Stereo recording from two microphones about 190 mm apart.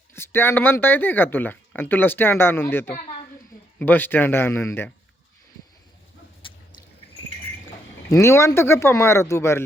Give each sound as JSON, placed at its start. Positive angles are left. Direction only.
{"t": 0.1, "sound": "speech", "side_deg": 10}
{"t": 6.4, "sound": "drip", "side_deg": 25}
{"t": 8.1, "sound": "speech", "side_deg": 15}